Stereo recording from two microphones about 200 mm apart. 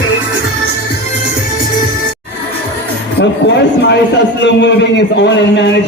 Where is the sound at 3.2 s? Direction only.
60° left (ahead or behind).